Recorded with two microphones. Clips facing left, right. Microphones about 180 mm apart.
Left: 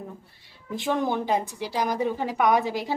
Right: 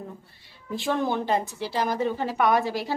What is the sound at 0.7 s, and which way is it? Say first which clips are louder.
A woman's voice: even; 15° left (ahead or behind).